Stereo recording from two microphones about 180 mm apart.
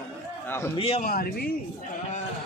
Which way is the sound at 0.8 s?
35° left (ahead or behind).